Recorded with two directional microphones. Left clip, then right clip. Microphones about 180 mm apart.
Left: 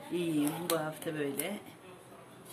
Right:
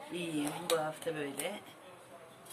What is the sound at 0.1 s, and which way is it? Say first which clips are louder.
Speech: left 5 dB; 15° left (ahead or behind).